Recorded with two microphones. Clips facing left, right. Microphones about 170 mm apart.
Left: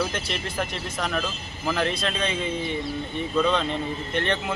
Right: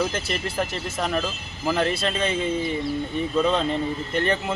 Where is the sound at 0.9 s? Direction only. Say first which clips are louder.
Right 3 dB; 30° right (ahead or behind).